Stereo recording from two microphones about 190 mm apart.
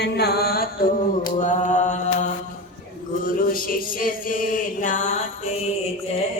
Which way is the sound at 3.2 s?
45° left (ahead or behind).